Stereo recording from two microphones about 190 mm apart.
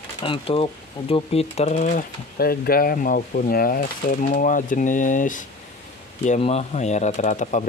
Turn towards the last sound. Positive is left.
turn(degrees=40)  # may be behind; listen again after turning